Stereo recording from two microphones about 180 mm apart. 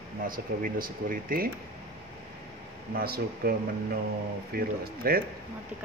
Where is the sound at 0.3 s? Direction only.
55° right (ahead or behind).